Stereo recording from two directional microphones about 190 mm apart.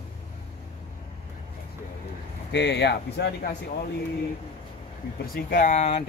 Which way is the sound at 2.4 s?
60° left (ahead or behind).